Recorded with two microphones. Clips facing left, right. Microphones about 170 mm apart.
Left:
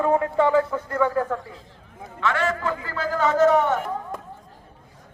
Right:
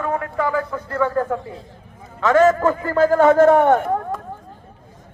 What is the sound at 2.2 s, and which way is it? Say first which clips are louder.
A man's voice: right 10 dB; 45° right (ahead or behind).